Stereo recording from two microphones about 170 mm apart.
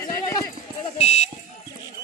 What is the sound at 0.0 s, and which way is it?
Horse, 20° left (ahead or behind).